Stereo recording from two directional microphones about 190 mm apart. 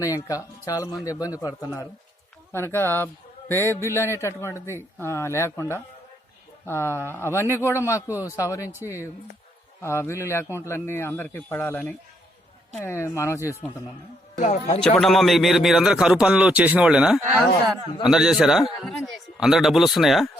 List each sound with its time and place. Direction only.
0.0 s a man's voice: 15° left (ahead or behind)
14.3 s speech: 40° left (ahead or behind)
14.9 s a man's voice: centre (ahead or behind)